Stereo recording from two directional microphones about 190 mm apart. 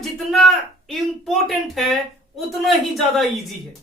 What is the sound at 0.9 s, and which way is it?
Speech, centre (ahead or behind).